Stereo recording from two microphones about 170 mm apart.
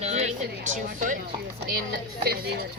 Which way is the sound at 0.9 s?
50° right (ahead or behind).